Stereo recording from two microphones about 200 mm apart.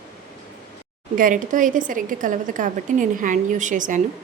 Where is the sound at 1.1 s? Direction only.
40° right (ahead or behind).